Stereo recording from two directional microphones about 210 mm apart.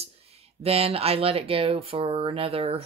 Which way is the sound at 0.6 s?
30° right (ahead or behind).